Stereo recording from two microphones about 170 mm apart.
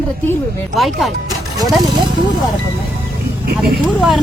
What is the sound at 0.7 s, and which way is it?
Speech, centre (ahead or behind).